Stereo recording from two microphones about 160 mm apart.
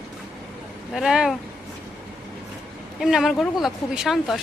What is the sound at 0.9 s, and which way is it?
Speech, 5° right (ahead or behind).